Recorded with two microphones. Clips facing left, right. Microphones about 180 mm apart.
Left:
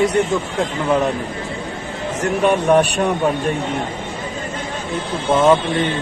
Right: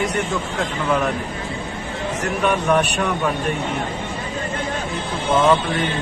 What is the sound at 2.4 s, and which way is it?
Speech, 30° left (ahead or behind).